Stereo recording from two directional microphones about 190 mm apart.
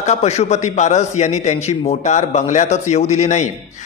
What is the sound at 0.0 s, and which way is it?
A man's voice, 35° left (ahead or behind).